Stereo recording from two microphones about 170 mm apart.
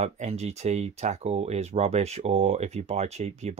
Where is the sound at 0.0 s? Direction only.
40° right (ahead or behind).